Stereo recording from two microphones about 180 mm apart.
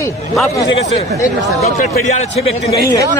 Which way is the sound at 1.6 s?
40° left (ahead or behind).